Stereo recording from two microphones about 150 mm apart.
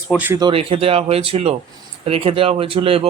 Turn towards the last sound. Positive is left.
turn(degrees=-40)  # may be behind; listen again after turning